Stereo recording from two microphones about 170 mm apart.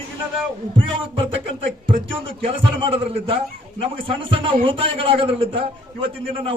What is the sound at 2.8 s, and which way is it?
A man's voice, 30° right (ahead or behind).